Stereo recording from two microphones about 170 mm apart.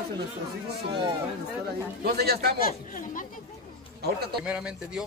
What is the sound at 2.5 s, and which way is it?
Speech, 55° left (ahead or behind).